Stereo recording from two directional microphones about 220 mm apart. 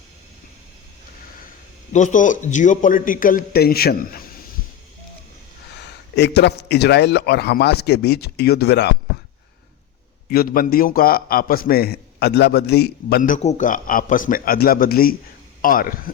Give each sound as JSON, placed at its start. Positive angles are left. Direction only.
{"t": 1.9, "sound": "a man's voice", "side_deg": 35}
{"t": 6.1, "sound": "a man's voice", "side_deg": 50}
{"t": 10.2, "sound": "a man's voice", "side_deg": 40}